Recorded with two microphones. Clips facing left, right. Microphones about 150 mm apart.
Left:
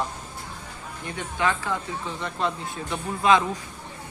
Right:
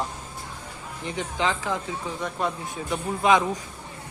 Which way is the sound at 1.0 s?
20° right (ahead or behind).